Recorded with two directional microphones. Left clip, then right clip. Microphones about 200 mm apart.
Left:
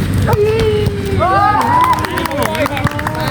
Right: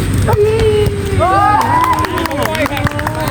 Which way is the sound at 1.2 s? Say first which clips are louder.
Right 1 dB; centre (ahead or behind).